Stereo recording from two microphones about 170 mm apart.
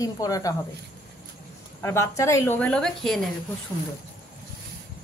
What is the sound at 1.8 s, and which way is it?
A woman's voice, 15° left (ahead or behind).